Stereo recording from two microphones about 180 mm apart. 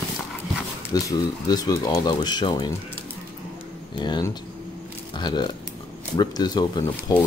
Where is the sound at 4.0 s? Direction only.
25° left (ahead or behind).